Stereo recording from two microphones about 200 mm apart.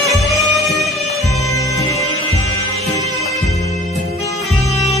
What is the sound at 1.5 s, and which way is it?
Music, 15° left (ahead or behind).